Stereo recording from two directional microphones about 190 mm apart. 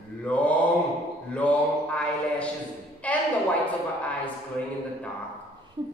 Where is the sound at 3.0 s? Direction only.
5° left (ahead or behind).